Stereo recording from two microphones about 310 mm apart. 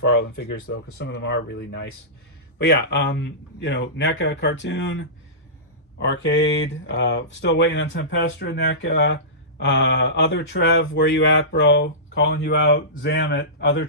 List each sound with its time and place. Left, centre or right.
0.0 s speech: left